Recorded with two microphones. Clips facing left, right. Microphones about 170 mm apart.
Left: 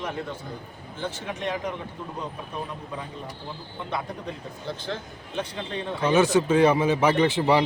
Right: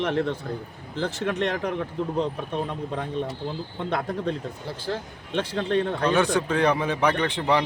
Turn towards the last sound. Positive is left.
turn(degrees=5)  # may be behind; listen again after turning